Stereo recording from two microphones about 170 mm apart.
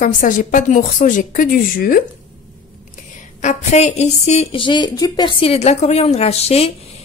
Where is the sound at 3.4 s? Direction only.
45° left (ahead or behind).